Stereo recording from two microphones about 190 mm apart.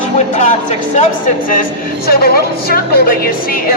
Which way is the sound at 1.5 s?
50° left (ahead or behind).